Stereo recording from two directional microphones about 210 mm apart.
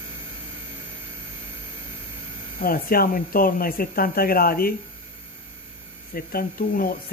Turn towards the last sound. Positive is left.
turn(degrees=45)  # may be behind; listen again after turning